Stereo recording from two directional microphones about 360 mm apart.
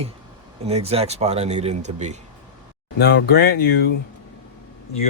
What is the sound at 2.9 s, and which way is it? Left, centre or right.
Speech, left.